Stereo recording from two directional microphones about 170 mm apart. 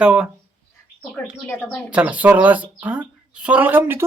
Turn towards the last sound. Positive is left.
turn(degrees=-10)  # may be behind; listen again after turning